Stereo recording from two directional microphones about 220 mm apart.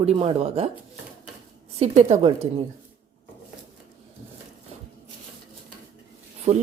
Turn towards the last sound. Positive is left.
turn(degrees=-30)  # may be behind; listen again after turning